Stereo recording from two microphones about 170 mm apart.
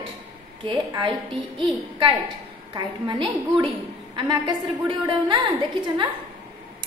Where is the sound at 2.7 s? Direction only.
30° right (ahead or behind).